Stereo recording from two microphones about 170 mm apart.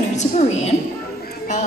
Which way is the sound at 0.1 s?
40° left (ahead or behind).